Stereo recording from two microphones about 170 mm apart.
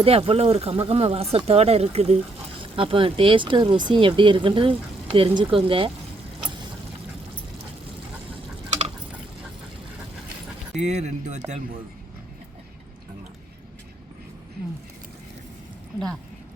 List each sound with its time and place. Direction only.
0.0 s speech: 35° right (ahead or behind)
10.8 s speech: 45° right (ahead or behind)